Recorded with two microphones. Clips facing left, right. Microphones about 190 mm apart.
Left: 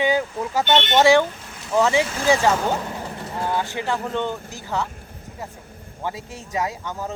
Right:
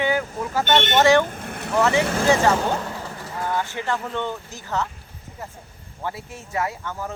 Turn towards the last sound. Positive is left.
turn(degrees=15)  # may be behind; listen again after turning